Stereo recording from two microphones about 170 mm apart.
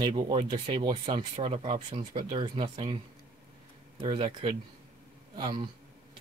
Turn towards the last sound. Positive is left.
turn(degrees=-25)  # may be behind; listen again after turning